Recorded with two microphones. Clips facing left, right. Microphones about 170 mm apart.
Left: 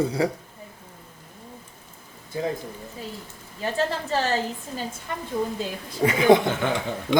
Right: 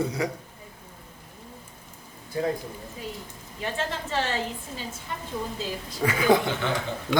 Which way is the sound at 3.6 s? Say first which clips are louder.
Left 5 dB; 40° left (ahead or behind).